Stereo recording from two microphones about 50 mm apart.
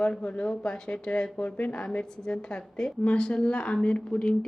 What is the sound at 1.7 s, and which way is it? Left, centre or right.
Speech, centre.